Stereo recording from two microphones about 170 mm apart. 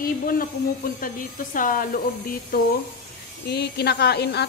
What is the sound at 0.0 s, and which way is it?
Speech, 55° left (ahead or behind).